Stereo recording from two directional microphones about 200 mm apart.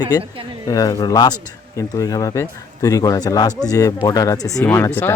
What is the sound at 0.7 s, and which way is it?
Speech, 20° left (ahead or behind).